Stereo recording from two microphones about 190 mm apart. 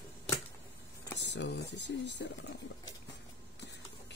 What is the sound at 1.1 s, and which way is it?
Speech, 65° left (ahead or behind).